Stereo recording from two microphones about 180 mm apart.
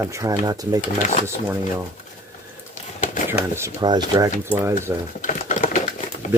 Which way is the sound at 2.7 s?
45° left (ahead or behind).